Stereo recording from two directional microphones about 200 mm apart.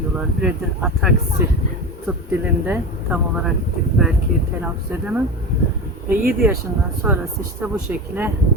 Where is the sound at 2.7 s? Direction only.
5° right (ahead or behind).